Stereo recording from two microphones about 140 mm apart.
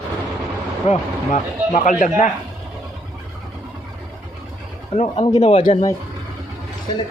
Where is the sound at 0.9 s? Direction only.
60° left (ahead or behind).